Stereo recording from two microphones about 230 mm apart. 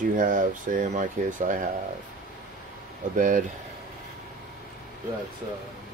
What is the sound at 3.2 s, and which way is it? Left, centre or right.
Speech, right.